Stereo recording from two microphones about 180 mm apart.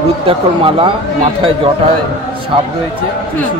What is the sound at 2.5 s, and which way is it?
Speech, 30° right (ahead or behind).